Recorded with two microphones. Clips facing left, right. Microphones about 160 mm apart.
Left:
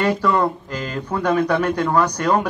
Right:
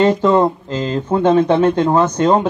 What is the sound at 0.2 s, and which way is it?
Speech, 25° right (ahead or behind).